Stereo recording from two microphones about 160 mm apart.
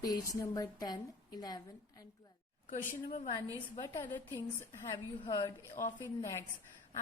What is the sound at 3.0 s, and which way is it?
Speech, 50° left (ahead or behind).